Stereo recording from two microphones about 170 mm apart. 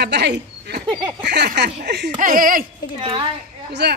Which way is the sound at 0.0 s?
80° right.